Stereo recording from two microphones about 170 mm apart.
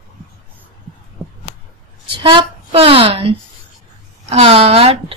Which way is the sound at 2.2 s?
30° right (ahead or behind).